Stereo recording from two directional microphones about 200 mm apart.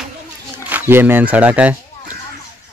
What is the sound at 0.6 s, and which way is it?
Speech, 10° right (ahead or behind).